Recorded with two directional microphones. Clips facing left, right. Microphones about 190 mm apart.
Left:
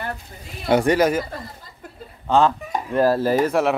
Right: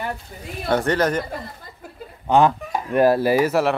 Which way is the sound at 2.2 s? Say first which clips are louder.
Right 1 dB; 15° right (ahead or behind).